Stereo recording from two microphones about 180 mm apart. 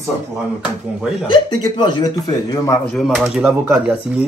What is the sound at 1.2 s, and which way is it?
A man's voice, 25° left (ahead or behind).